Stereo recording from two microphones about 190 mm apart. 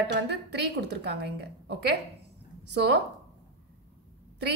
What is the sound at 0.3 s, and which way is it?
Speech, 60° right (ahead or behind).